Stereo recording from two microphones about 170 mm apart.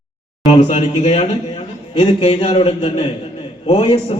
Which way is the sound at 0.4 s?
40° left (ahead or behind).